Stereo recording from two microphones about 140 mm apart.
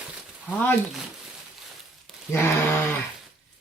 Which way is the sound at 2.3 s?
20° left (ahead or behind).